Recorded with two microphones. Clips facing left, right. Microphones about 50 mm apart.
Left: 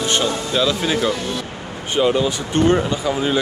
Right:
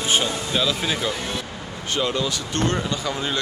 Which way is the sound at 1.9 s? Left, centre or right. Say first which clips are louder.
Left 7 dB; centre.